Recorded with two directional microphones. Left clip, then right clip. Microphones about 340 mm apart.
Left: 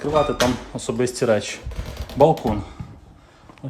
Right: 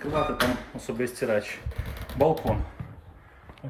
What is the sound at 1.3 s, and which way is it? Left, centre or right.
Speech, centre.